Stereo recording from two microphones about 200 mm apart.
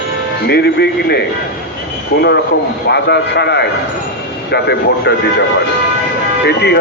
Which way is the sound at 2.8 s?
55° left (ahead or behind).